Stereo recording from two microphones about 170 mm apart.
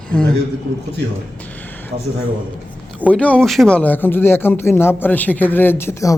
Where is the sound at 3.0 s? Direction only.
10° left (ahead or behind).